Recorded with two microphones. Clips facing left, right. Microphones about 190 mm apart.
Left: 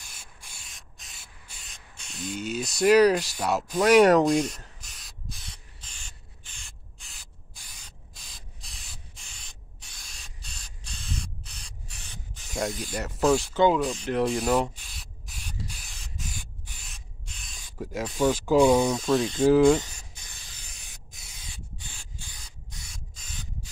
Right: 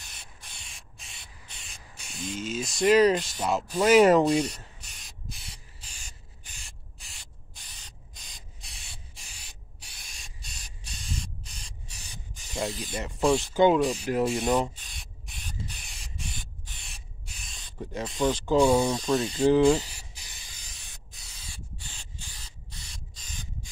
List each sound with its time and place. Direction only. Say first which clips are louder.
0.7 s spray: right 1 dB; centre (ahead or behind)
5.5 s crow: even; 35° right (ahead or behind)
7.0 s spray: right 1 dB; centre (ahead or behind)
8.3 s rub: left 1 dB; centre (ahead or behind)
11.6 s rub: even; centre (ahead or behind)
12.9 s speech: left 1 dB; centre (ahead or behind)
13.5 s speech: right 1 dB; 15° right (ahead or behind)
13.7 s rub: right 1 dB; 5° right (ahead or behind)
16.6 s spray: even; 5° left (ahead or behind)
18.9 s speech: left 2 dB; centre (ahead or behind)
20.5 s spray: left 1 dB; 5° left (ahead or behind)